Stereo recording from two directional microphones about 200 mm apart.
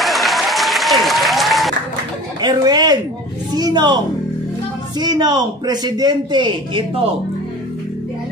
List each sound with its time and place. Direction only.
0.0 s applause: centre (ahead or behind)
2.4 s a man's voice: 20° right (ahead or behind)
4.9 s a man's voice: 20° right (ahead or behind)